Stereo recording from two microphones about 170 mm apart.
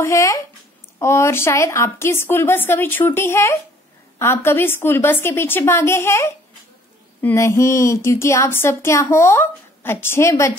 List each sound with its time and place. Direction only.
0.0 s speech: 15° left (ahead or behind)